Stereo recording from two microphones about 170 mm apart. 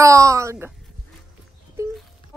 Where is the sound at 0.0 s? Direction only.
20° right (ahead or behind).